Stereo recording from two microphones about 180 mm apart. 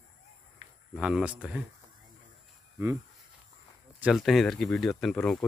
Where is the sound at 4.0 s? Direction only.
Centre (ahead or behind).